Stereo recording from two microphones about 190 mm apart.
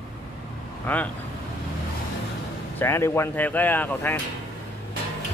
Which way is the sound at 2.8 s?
15° left (ahead or behind).